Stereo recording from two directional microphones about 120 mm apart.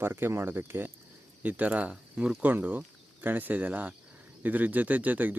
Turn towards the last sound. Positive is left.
turn(degrees=-15)  # may be behind; listen again after turning